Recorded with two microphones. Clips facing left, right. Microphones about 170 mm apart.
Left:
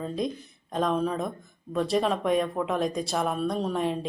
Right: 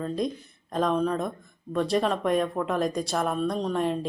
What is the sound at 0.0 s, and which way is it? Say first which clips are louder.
Speech: right 1 dB; centre (ahead or behind).